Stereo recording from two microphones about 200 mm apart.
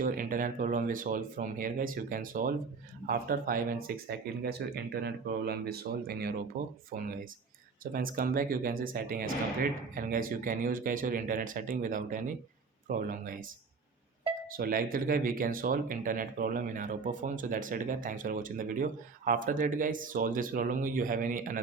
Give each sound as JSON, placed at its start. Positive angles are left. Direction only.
{"t": 0.0, "sound": "speech", "side_deg": -45}
{"t": 14.5, "sound": "speech", "side_deg": -45}